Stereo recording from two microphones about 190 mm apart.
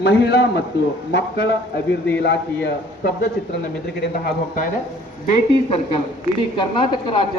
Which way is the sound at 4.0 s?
50° left (ahead or behind).